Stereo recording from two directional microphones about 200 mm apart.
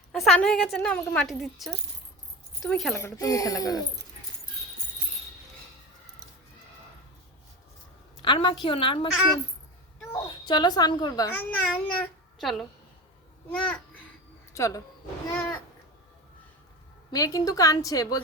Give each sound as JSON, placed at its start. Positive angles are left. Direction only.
{"t": 0.1, "sound": "a woman's voice", "side_deg": 5}
{"t": 2.9, "sound": "a woman's voice", "side_deg": 15}
{"t": 8.2, "sound": "a child's voice", "side_deg": 25}
{"t": 10.1, "sound": "a child's voice", "side_deg": 20}
{"t": 11.3, "sound": "a woman's voice", "side_deg": 5}
{"t": 14.5, "sound": "speech", "side_deg": 15}
{"t": 15.3, "sound": "a sound", "side_deg": 10}
{"t": 17.1, "sound": "a woman's voice", "side_deg": 15}